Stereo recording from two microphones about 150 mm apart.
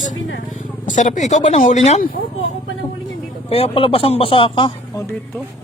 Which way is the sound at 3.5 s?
40° left (ahead or behind).